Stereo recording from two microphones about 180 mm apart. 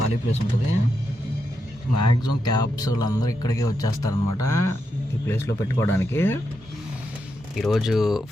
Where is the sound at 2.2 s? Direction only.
20° left (ahead or behind).